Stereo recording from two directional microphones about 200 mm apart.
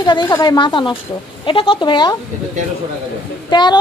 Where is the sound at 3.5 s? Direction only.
20° left (ahead or behind).